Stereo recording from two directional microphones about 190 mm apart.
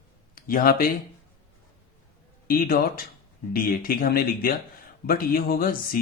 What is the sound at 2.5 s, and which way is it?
Speech, 50° left (ahead or behind).